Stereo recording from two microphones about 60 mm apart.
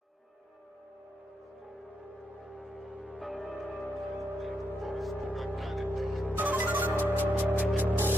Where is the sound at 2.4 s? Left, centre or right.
Centre.